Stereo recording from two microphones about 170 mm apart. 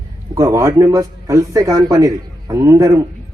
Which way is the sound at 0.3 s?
20° right (ahead or behind).